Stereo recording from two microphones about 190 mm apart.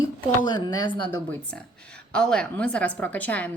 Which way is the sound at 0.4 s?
25° left (ahead or behind).